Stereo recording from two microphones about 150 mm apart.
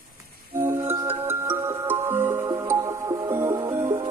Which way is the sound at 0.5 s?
15° right (ahead or behind).